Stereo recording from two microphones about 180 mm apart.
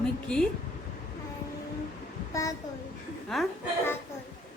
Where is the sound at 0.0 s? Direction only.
5° left (ahead or behind).